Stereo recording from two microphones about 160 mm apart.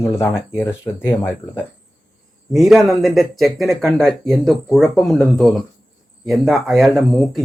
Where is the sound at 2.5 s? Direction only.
Centre (ahead or behind).